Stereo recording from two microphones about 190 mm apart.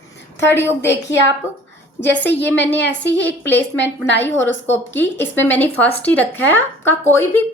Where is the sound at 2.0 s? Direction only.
65° left (ahead or behind).